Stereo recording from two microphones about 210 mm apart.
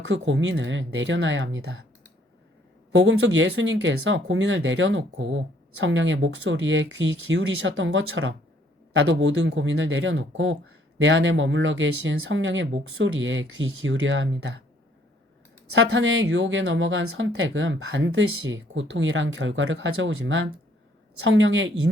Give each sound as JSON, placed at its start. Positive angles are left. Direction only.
{"t": 0.1, "sound": "speech", "side_deg": -65}
{"t": 2.9, "sound": "speech", "side_deg": -65}
{"t": 15.7, "sound": "speech", "side_deg": -60}